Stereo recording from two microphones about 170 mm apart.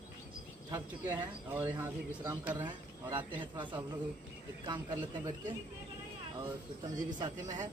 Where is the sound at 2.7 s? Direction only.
25° right (ahead or behind).